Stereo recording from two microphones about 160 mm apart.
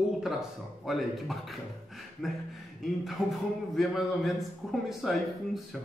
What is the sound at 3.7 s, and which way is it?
Speech, centre (ahead or behind).